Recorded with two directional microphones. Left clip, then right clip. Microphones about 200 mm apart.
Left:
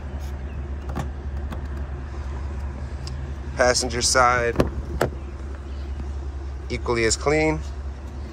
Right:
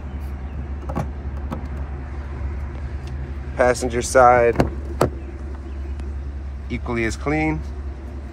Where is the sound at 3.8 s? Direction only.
5° left (ahead or behind).